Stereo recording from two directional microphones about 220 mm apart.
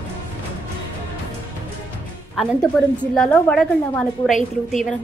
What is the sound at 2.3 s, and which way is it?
A woman's voice, centre (ahead or behind).